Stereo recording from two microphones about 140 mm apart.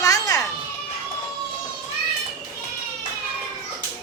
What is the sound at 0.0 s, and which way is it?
Children playing, 25° left (ahead or behind).